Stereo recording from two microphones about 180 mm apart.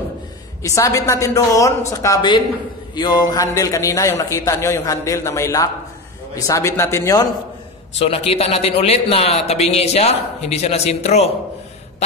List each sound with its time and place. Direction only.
0.6 s a man's voice: 15° left (ahead or behind)
8.0 s a man's voice: 35° left (ahead or behind)